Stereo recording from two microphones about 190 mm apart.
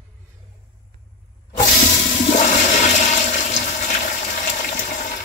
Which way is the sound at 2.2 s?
40° left (ahead or behind).